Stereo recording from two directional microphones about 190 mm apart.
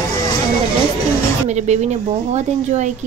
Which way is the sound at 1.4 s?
35° right (ahead or behind).